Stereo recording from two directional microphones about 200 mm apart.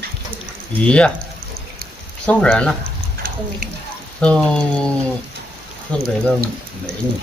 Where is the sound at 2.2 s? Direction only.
5° left (ahead or behind).